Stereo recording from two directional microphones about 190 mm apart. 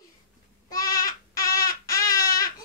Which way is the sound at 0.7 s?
20° left (ahead or behind).